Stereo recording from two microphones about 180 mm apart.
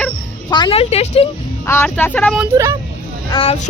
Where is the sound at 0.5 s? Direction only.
30° left (ahead or behind).